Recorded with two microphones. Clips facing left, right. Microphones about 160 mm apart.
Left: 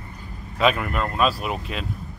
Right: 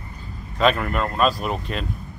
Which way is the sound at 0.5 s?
5° left (ahead or behind).